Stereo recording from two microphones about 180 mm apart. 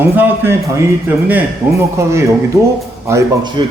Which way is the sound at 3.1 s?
15° right (ahead or behind).